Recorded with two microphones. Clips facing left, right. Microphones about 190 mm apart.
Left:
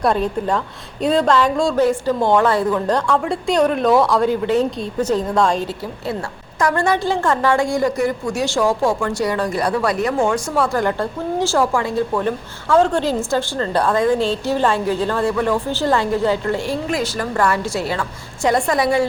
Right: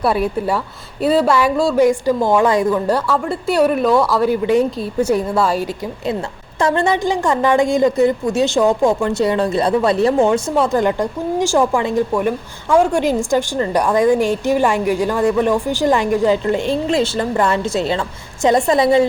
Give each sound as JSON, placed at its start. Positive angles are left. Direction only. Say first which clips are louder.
{"t": 0.0, "sound": "a woman's voice", "louder": "right 1 dB", "side_deg": -10}
{"t": 6.6, "sound": "a woman's voice", "louder": "right 2 dB", "side_deg": -25}